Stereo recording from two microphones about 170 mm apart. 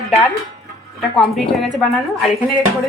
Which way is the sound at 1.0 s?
Centre (ahead or behind).